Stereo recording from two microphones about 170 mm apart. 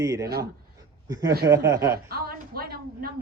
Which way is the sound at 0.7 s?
20° right (ahead or behind).